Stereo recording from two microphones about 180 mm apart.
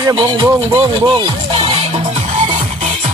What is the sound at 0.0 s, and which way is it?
Speech, 20° right (ahead or behind).